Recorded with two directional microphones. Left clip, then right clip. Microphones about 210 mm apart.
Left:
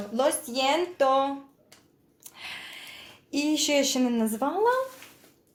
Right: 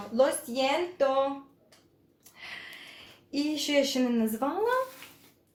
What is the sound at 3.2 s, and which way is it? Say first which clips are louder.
Speech: left 4 dB; 40° left (ahead or behind).